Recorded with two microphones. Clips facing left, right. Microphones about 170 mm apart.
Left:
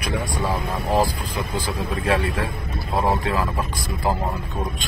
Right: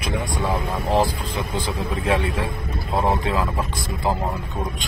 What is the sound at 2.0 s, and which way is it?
A man's voice, 20° right (ahead or behind).